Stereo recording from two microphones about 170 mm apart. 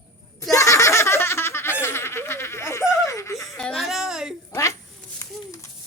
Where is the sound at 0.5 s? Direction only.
20° left (ahead or behind).